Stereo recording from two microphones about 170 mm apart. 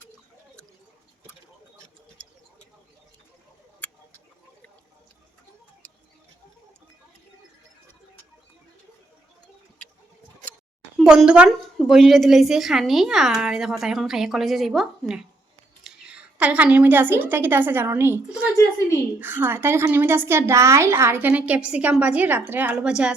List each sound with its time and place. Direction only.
10.9 s a woman's voice: centre (ahead or behind)
18.5 s a woman's voice: 15° left (ahead or behind)
19.2 s a woman's voice: 10° right (ahead or behind)